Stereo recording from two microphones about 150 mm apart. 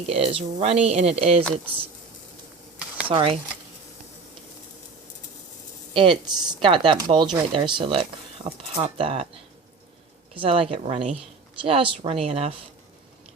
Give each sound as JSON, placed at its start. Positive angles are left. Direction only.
{"t": 0.0, "sound": "speech", "side_deg": -45}
{"t": 3.1, "sound": "speech", "side_deg": -40}
{"t": 5.9, "sound": "speech", "side_deg": -35}
{"t": 10.3, "sound": "speech", "side_deg": -40}